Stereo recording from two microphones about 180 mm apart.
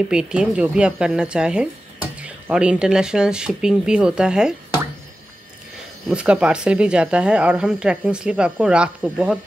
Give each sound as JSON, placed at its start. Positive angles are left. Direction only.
{"t": 0.1, "sound": "speech", "side_deg": -5}
{"t": 6.0, "sound": "speech", "side_deg": -5}